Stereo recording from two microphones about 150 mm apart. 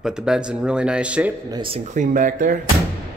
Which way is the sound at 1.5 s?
35° right (ahead or behind).